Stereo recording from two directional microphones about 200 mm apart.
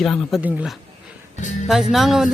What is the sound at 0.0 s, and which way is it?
Speech, 5° left (ahead or behind).